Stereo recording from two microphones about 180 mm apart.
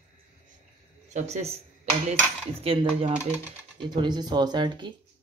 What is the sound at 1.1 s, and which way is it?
Cutlery, 40° right (ahead or behind).